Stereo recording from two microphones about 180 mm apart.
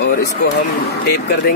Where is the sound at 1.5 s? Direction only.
55° left (ahead or behind).